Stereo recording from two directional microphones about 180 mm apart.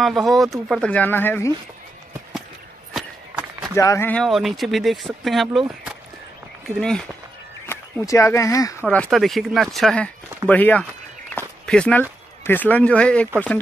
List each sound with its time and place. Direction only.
0.0 s speech: centre (ahead or behind)
2.9 s a sound: centre (ahead or behind)
3.7 s speech: 15° left (ahead or behind); by 5.6 s centre (ahead or behind)
6.8 s speech: 5° left (ahead or behind)
7.6 s speech: 15° left (ahead or behind)
8.8 s speech: 5° left (ahead or behind)
11.3 s walk: 5° left (ahead or behind)
12.4 s speech: 10° left (ahead or behind)